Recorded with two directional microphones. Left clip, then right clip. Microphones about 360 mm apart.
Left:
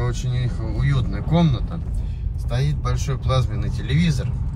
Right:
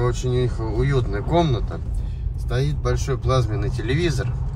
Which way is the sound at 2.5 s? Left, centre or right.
Centre.